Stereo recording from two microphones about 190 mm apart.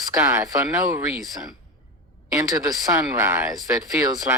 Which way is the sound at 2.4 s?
20° right (ahead or behind).